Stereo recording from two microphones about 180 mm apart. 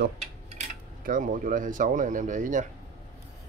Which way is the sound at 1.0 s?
50° right (ahead or behind).